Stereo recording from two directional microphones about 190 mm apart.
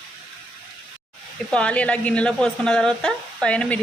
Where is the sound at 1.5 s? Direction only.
5° left (ahead or behind).